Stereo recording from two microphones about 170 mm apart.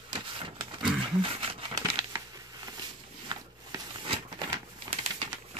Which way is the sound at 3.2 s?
25° right (ahead or behind).